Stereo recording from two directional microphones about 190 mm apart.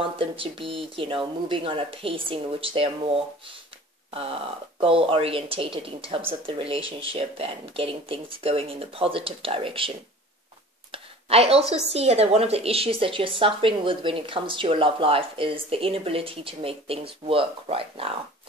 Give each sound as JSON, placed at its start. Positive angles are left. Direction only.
{"t": 0.0, "sound": "a woman's voice", "side_deg": -30}
{"t": 10.9, "sound": "a sound", "side_deg": -30}
{"t": 11.7, "sound": "a woman's voice", "side_deg": -35}